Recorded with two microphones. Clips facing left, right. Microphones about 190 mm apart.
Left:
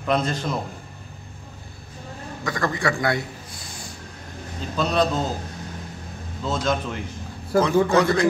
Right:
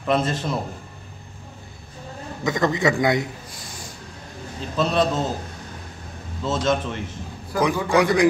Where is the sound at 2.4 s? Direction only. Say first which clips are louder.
Right 4 dB; 20° right (ahead or behind).